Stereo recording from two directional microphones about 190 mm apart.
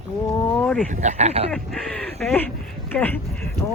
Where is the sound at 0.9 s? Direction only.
40° right (ahead or behind).